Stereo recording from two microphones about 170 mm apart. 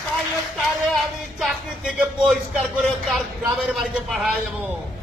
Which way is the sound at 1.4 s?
Centre (ahead or behind).